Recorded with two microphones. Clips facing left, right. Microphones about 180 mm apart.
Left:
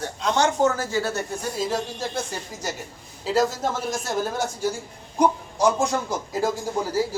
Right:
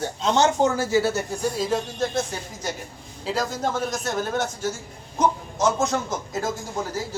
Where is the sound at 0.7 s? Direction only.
10° right (ahead or behind).